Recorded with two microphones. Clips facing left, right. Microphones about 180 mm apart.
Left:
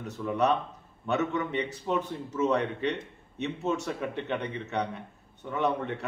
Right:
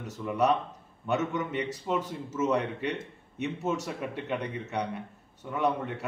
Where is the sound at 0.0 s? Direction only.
5° right (ahead or behind).